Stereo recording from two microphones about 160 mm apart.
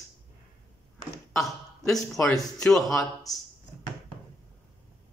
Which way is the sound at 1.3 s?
Centre (ahead or behind).